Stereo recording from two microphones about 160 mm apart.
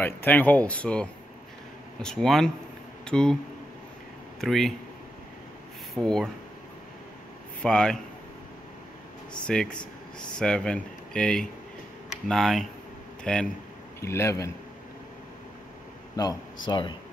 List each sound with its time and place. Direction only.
0.0 s speech: 10° left (ahead or behind)
4.4 s speech: centre (ahead or behind)
5.9 s speech: 5° left (ahead or behind)
7.6 s speech: 5° left (ahead or behind)
9.5 s speech: 5° left (ahead or behind)
14.0 s speech: 15° left (ahead or behind)
16.2 s speech: 25° left (ahead or behind)